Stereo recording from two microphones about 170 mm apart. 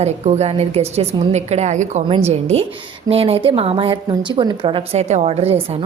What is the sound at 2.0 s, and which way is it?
A woman's voice, 35° right (ahead or behind).